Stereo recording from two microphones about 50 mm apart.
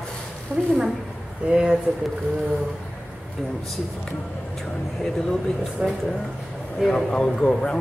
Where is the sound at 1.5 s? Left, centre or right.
Centre.